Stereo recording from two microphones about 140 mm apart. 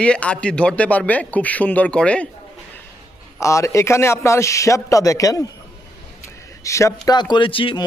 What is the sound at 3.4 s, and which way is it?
A man's voice, 20° left (ahead or behind).